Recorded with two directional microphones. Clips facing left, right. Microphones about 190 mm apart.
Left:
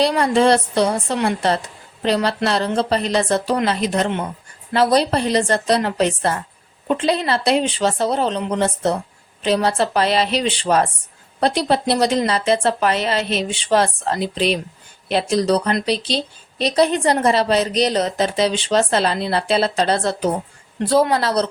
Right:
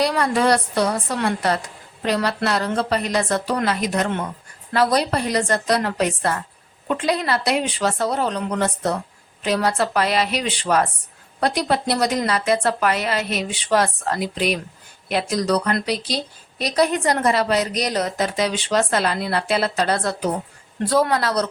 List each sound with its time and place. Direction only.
0.0 s a woman's voice: 25° left (ahead or behind)